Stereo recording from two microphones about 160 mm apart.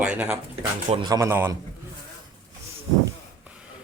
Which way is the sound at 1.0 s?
20° right (ahead or behind).